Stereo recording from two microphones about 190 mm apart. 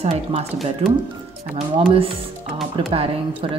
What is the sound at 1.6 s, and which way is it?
Speech, 30° right (ahead or behind).